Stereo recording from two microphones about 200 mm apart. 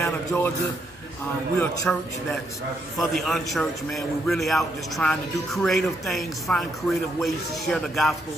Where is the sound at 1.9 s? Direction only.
5° left (ahead or behind).